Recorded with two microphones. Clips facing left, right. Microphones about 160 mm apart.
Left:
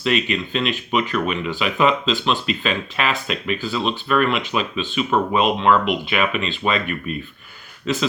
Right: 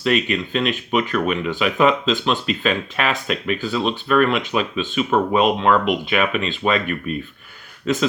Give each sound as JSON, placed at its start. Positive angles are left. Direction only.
{"t": 0.0, "sound": "speech", "side_deg": -45}